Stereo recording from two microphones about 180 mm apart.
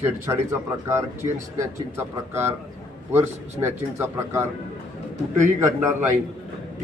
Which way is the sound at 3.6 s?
15° right (ahead or behind).